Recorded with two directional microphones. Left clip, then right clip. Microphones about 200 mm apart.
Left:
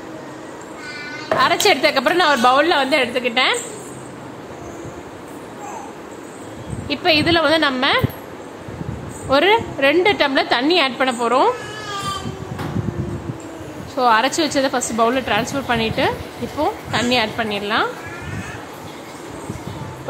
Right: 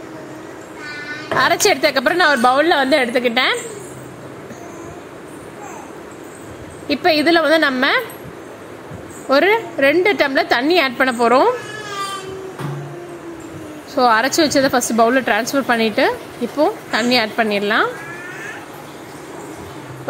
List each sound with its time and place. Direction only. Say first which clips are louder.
1.4 s a woman's voice: right 1 dB; 20° right (ahead or behind)
6.9 s a woman's voice: right 2 dB; 15° right (ahead or behind)
9.3 s a woman's voice: right 1 dB; 15° right (ahead or behind)
13.9 s a woman's voice: right 2 dB; 20° right (ahead or behind)